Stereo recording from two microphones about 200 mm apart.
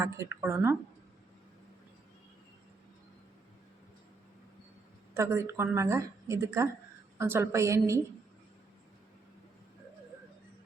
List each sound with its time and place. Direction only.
0.0 s a woman's voice: 15° right (ahead or behind)
5.1 s a woman's voice: 15° right (ahead or behind)